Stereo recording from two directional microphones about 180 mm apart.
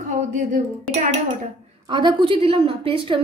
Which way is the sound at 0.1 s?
45° right (ahead or behind).